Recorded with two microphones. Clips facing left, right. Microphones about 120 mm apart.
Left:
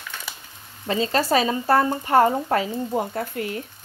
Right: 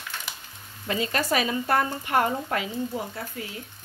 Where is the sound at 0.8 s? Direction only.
30° left (ahead or behind).